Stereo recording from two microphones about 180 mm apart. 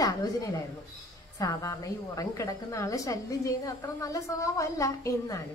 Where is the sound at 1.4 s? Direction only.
20° left (ahead or behind).